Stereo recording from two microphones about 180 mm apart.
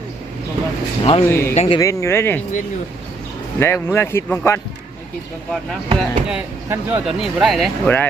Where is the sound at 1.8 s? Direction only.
15° left (ahead or behind).